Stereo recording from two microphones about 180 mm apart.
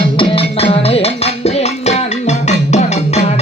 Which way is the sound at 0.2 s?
30° left (ahead or behind).